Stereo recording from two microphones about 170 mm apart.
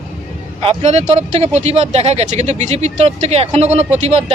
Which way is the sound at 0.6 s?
40° right (ahead or behind).